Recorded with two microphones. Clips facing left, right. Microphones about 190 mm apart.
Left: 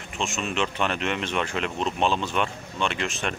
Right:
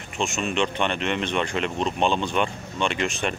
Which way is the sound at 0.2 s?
Centre (ahead or behind).